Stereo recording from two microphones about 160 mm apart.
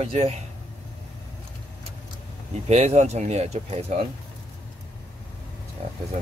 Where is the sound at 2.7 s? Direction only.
40° right (ahead or behind).